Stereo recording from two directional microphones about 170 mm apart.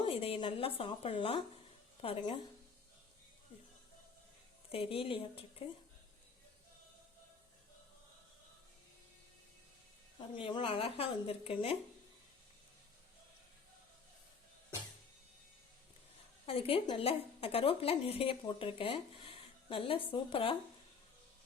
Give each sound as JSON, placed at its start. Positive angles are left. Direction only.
{"t": 0.0, "sound": "a woman's voice", "side_deg": 35}
{"t": 4.7, "sound": "a woman's voice", "side_deg": 35}
{"t": 10.2, "sound": "a woman's voice", "side_deg": 30}
{"t": 16.5, "sound": "a woman's voice", "side_deg": 35}